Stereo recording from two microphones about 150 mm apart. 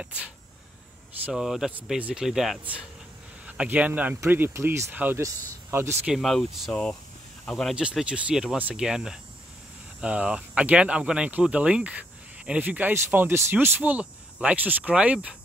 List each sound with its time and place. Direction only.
0.0 s speech: 10° right (ahead or behind)
6.1 s speech: centre (ahead or behind)